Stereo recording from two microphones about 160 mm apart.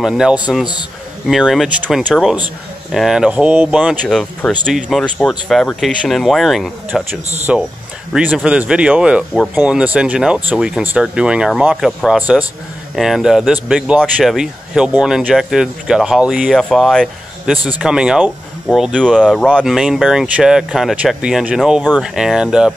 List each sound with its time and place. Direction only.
0.0 s speech: 5° right (ahead or behind)
4.1 s speech: 5° left (ahead or behind)